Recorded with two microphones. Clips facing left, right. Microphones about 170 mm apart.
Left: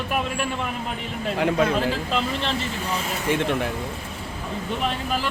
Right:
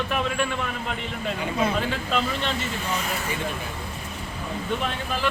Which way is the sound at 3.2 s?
90° left.